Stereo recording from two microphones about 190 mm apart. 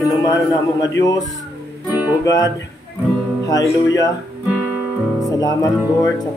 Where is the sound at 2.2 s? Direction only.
20° left (ahead or behind).